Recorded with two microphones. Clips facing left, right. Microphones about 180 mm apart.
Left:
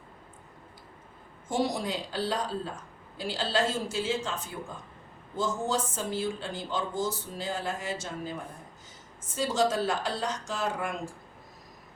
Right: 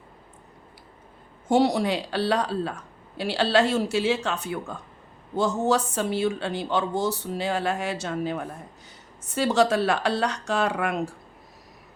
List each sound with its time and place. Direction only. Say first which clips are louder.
1.5 s speech: right 8 dB; 70° right (ahead or behind)